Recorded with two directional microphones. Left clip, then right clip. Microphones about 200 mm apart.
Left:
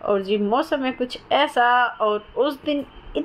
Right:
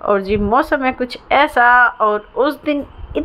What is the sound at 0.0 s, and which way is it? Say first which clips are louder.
A woman's voice: right 5 dB; 15° right (ahead or behind).